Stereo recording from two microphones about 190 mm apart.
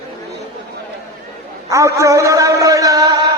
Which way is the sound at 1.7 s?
15° right (ahead or behind).